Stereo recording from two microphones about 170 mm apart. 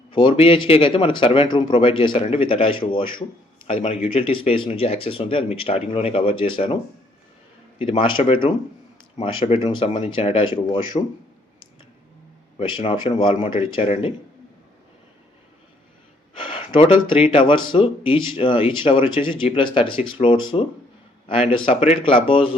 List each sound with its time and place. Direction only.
0.1 s speech: 30° left (ahead or behind)
7.8 s speech: 30° left (ahead or behind)
12.5 s speech: 35° left (ahead or behind)
16.4 s a sound: 30° left (ahead or behind)
17.3 s speech: 30° left (ahead or behind)